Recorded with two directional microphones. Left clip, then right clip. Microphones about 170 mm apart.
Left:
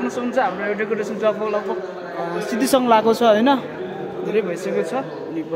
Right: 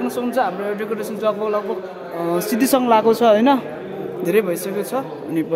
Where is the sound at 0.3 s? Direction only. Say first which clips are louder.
Left 1 dB; 20° right (ahead or behind).